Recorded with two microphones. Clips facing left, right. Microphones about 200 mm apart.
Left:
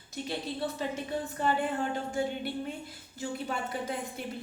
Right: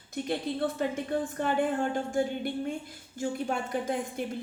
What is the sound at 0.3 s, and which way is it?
Speech, 50° right (ahead or behind).